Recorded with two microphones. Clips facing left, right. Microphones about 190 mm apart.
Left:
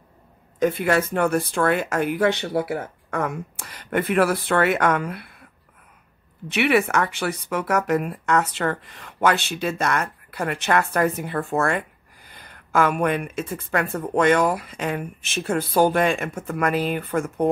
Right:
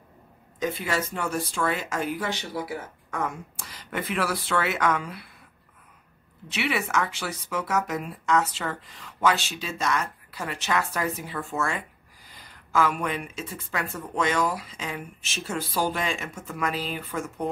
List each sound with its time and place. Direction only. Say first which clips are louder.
0.6 s speech: left 8 dB; 55° left (ahead or behind)
6.5 s speech: left 7 dB; 60° left (ahead or behind)